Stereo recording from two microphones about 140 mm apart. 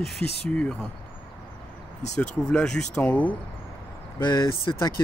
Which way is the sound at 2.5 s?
5° left (ahead or behind).